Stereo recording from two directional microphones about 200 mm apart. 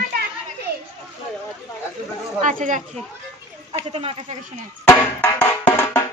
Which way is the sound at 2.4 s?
40° right (ahead or behind).